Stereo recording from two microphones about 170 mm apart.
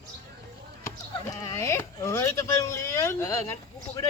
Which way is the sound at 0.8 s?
20° left (ahead or behind).